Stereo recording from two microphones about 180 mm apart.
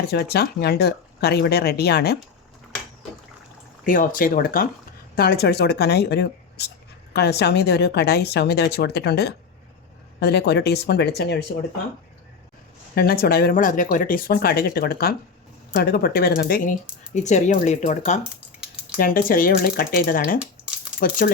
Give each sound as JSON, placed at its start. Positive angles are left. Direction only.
{"t": 0.1, "sound": "speech", "side_deg": 65}
{"t": 3.8, "sound": "speech", "side_deg": 50}
{"t": 12.9, "sound": "speech", "side_deg": 60}
{"t": 17.2, "sound": "speech", "side_deg": 40}
{"t": 18.2, "sound": "a sound", "side_deg": -5}
{"t": 18.9, "sound": "speech", "side_deg": 50}